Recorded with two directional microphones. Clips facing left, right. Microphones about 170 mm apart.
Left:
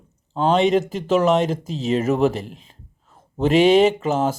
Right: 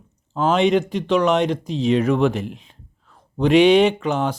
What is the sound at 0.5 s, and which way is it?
Speech, centre (ahead or behind).